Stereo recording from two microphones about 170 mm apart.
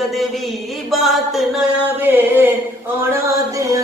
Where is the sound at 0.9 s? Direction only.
Centre (ahead or behind).